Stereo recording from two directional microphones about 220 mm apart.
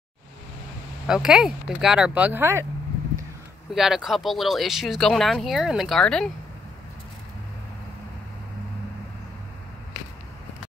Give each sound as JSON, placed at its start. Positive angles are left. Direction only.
{"t": 1.0, "sound": "speech", "side_deg": -5}
{"t": 3.7, "sound": "speech", "side_deg": 0}